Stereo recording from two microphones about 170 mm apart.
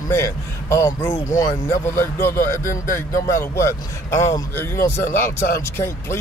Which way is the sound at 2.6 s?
50° left (ahead or behind).